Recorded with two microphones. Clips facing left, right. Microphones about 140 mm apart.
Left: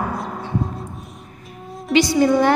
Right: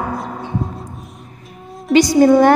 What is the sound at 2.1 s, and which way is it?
Speech, 45° right (ahead or behind).